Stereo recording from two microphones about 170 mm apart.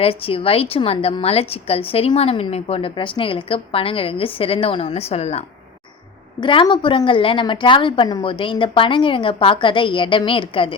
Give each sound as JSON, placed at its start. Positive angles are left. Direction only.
{"t": 0.0, "sound": "a woman's voice", "side_deg": 35}
{"t": 6.4, "sound": "a woman's voice", "side_deg": 30}